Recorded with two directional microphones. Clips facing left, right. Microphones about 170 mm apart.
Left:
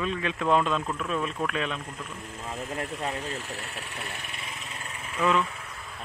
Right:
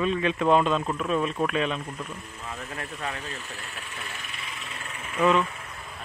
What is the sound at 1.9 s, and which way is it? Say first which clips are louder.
Speech: right 3 dB; 45° right (ahead or behind).